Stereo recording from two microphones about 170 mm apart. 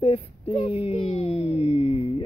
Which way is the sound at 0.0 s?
35° left (ahead or behind).